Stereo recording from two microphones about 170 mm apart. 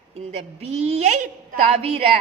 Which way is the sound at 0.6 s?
35° right (ahead or behind).